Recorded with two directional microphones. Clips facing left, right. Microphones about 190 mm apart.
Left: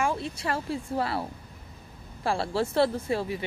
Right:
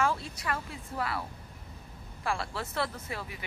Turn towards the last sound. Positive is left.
turn(degrees=30)  # may be behind; listen again after turning